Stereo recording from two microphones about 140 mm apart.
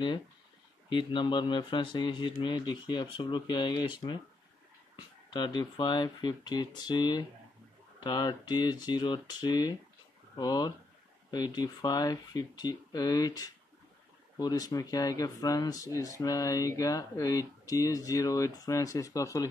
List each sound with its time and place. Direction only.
0.8 s speech: 35° left (ahead or behind)
4.9 s speech: 30° left (ahead or behind)